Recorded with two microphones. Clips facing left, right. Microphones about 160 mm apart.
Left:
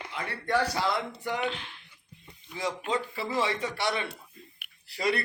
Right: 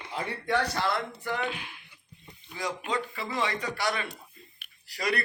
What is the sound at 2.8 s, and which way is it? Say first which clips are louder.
Speech: left 2 dB; 30° left (ahead or behind).